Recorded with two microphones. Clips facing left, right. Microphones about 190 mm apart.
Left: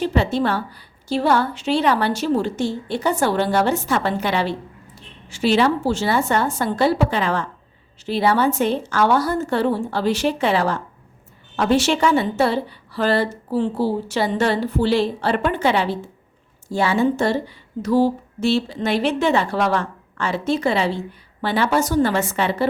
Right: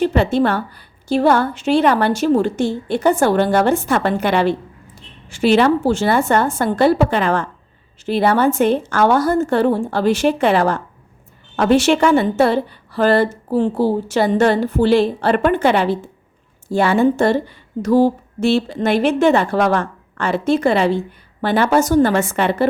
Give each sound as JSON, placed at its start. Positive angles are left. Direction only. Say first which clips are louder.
{"t": 0.0, "sound": "a woman's voice", "louder": "right 4 dB", "side_deg": -55}